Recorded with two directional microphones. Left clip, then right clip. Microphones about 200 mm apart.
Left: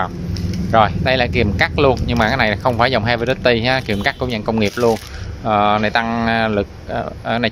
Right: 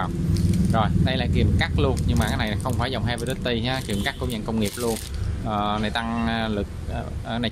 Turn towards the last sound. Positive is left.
turn(degrees=20)  # may be behind; listen again after turning